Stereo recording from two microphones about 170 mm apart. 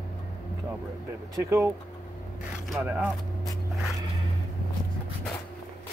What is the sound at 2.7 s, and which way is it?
Speech, 10° right (ahead or behind).